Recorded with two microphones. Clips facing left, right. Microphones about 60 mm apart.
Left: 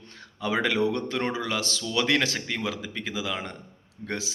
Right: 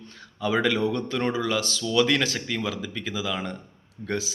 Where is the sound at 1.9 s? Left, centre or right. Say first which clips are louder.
Right 2 dB; left.